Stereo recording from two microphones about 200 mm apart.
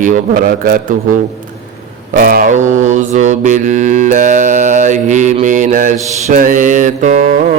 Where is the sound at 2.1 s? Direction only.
45° right (ahead or behind).